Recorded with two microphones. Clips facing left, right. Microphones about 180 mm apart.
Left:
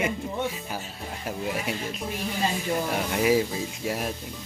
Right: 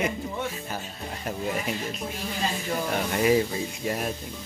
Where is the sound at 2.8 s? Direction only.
5° left (ahead or behind).